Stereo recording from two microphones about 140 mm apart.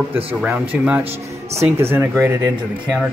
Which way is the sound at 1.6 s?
15° right (ahead or behind).